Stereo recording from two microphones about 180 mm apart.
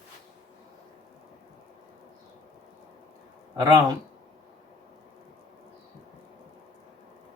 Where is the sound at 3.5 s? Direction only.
20° right (ahead or behind).